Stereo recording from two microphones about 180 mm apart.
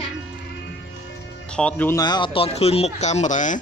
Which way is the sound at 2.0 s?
25° left (ahead or behind).